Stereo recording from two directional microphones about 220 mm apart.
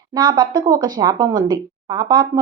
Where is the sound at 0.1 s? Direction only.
20° right (ahead or behind).